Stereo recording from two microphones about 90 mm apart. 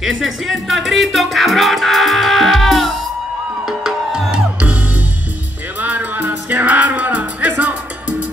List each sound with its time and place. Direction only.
0.0 s music: centre (ahead or behind)
5.8 s music: 20° right (ahead or behind)